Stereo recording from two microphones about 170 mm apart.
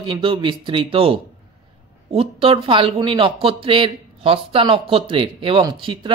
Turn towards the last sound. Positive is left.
turn(degrees=-30)  # may be behind; listen again after turning